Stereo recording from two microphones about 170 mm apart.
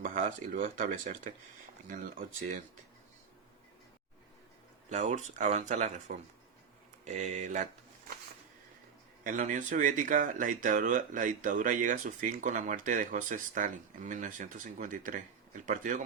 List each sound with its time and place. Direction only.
0.0 s speech: 50° right (ahead or behind)
4.9 s speech: 45° right (ahead or behind)
7.0 s speech: 45° right (ahead or behind)
9.2 s speech: 50° right (ahead or behind)